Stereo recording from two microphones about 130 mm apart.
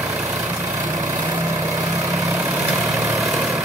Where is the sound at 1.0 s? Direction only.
30° right (ahead or behind).